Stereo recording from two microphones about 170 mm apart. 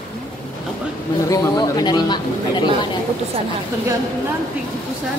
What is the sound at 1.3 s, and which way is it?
A woman's voice, 20° left (ahead or behind).